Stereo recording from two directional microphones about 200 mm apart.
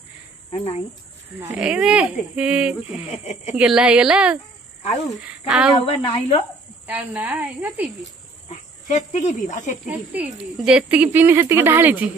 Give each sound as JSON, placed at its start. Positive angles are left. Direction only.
{"t": 0.6, "sound": "speech", "side_deg": 35}
{"t": 1.4, "sound": "a woman's voice", "side_deg": -10}
{"t": 5.8, "sound": "a woman's voice", "side_deg": 25}
{"t": 6.9, "sound": "speech", "side_deg": -10}
{"t": 8.5, "sound": "speech", "side_deg": 35}
{"t": 9.8, "sound": "speech", "side_deg": -5}